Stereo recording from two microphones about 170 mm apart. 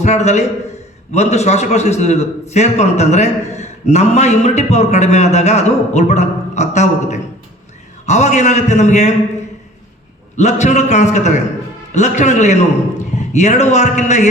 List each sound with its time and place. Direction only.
0.0 s a man's voice: 40° left (ahead or behind)
10.3 s a man's voice: 40° left (ahead or behind)